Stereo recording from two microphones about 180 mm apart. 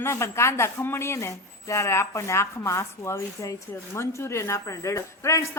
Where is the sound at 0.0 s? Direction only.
15° left (ahead or behind).